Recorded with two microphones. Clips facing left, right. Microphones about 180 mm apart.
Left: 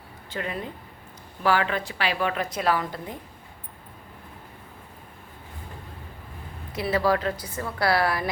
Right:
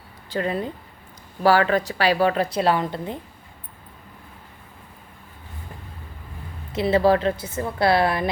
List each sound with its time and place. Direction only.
0.3 s a woman's voice: 35° right (ahead or behind)
6.7 s a woman's voice: 25° right (ahead or behind)